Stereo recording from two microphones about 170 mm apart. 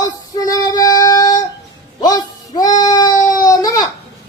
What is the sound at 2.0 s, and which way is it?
Child singing, 20° left (ahead or behind).